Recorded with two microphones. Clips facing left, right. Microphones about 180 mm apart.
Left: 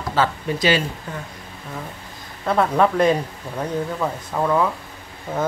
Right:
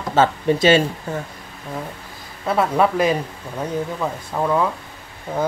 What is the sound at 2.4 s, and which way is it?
Speech, 5° right (ahead or behind).